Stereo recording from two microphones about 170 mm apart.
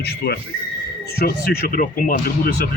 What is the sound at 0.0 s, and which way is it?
Speech, 70° left (ahead or behind).